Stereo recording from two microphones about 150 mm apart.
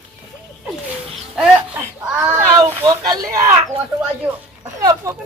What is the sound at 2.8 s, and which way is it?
Speech, 25° right (ahead or behind).